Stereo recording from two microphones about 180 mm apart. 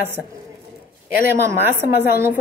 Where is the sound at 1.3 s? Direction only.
10° right (ahead or behind).